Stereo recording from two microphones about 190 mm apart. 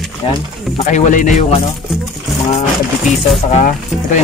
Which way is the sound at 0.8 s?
40° left (ahead or behind).